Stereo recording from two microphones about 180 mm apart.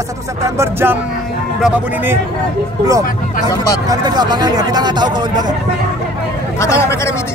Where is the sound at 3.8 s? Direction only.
20° right (ahead or behind).